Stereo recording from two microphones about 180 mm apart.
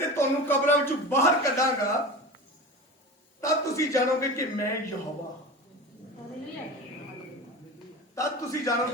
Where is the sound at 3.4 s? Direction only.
15° left (ahead or behind).